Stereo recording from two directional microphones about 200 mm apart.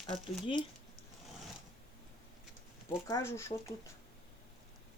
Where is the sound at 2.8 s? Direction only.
15° left (ahead or behind).